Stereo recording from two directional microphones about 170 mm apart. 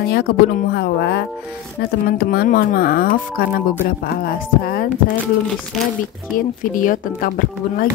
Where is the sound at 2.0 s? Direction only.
65° left (ahead or behind).